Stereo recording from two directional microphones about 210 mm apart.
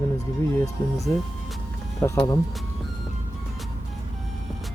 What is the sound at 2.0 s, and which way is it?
Speech, 15° left (ahead or behind).